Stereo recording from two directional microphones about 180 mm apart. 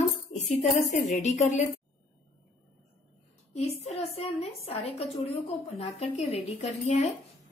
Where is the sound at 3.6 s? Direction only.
35° left (ahead or behind).